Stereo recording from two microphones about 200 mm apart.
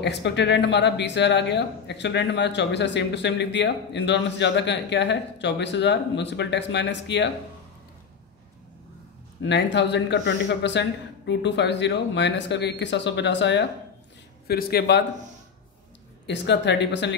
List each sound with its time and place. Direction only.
0.0 s speech: 60° left (ahead or behind)
9.4 s speech: 60° left (ahead or behind)
14.5 s speech: 50° left (ahead or behind)
16.3 s speech: 60° left (ahead or behind)